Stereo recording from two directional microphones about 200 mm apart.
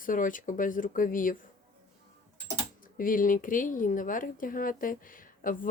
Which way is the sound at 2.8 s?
45° left (ahead or behind).